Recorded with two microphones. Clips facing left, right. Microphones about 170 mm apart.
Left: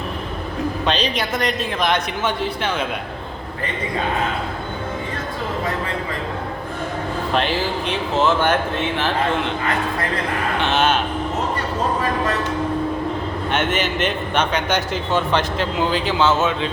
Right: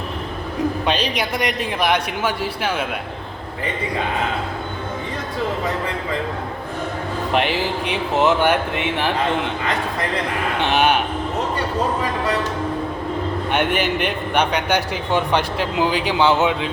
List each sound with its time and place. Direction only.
0.9 s a man's voice: 10° right (ahead or behind)
7.3 s a man's voice: 15° right (ahead or behind)
10.7 s speech: 15° right (ahead or behind)
13.5 s a man's voice: 15° right (ahead or behind)